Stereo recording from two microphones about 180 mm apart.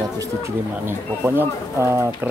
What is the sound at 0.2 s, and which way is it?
Speech, 15° right (ahead or behind).